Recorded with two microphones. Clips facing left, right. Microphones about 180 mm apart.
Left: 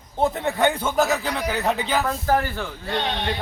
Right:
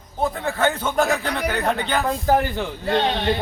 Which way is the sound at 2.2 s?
20° right (ahead or behind).